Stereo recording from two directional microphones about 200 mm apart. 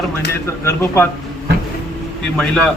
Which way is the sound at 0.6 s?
15° left (ahead or behind).